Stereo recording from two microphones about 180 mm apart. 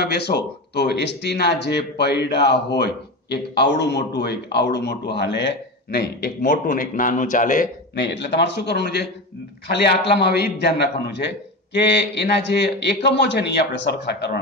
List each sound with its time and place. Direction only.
0.0 s a man's voice: 60° left (ahead or behind)
6.4 s speech: 45° left (ahead or behind)
7.9 s a man's voice: 70° left (ahead or behind)